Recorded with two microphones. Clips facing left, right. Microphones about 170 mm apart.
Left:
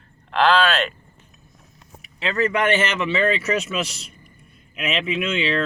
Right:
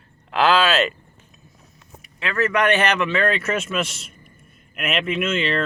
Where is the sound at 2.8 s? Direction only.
60° right (ahead or behind).